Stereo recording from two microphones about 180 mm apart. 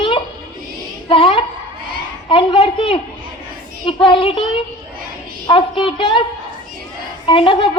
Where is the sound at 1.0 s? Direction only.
30° left (ahead or behind).